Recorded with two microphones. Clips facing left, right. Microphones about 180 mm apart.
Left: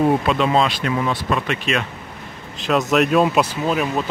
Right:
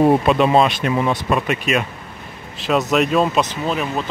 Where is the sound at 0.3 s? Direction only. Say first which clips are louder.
Right 3 dB; 20° right (ahead or behind).